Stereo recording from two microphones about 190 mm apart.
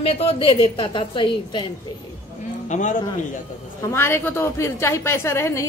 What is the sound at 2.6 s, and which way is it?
Speech, 40° left (ahead or behind).